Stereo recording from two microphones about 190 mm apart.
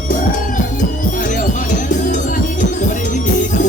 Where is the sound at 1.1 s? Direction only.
45° left (ahead or behind).